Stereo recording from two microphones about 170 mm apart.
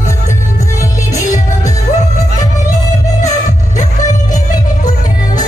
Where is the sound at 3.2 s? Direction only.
45° left (ahead or behind).